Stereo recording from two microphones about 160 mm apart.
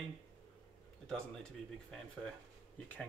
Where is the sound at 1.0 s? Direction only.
5° left (ahead or behind).